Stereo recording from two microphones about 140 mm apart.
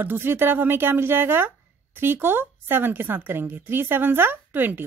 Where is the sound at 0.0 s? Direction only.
15° right (ahead or behind).